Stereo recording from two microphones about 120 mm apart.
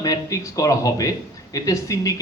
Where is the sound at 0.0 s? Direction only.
30° left (ahead or behind).